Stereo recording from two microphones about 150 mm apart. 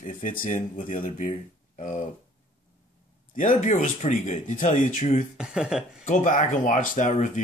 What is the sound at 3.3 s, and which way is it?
Speech, 60° left (ahead or behind).